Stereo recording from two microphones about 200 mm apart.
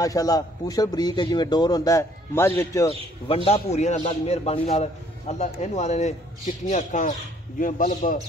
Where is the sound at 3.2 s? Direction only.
30° left (ahead or behind).